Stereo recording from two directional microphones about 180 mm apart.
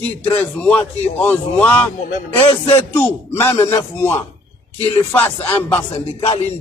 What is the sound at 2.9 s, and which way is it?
A man's voice, 15° left (ahead or behind).